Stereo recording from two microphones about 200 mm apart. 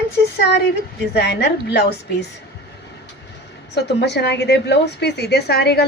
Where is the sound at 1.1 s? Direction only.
55° left (ahead or behind).